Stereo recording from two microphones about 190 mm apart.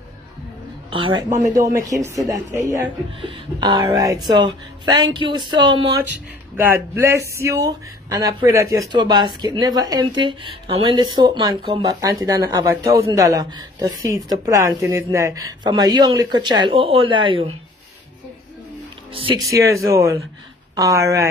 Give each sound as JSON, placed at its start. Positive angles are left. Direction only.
{"t": 0.8, "sound": "a woman's voice", "side_deg": -25}
{"t": 1.4, "sound": "speech", "side_deg": -15}
{"t": 6.5, "sound": "speech", "side_deg": -10}
{"t": 19.1, "sound": "speech", "side_deg": -25}
{"t": 19.5, "sound": "speech", "side_deg": -15}